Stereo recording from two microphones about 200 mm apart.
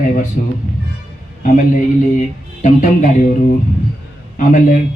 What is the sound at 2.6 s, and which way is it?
Speech, 40° left (ahead or behind).